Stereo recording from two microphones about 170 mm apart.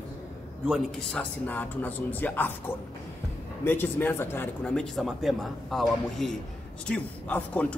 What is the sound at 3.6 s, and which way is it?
A man's voice, 10° left (ahead or behind).